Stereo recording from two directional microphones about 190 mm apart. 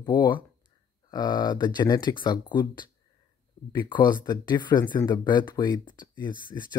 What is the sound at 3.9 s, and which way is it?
Speech, 25° left (ahead or behind).